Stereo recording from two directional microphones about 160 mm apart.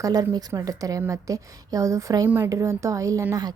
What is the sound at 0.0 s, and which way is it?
A woman's voice, 20° right (ahead or behind).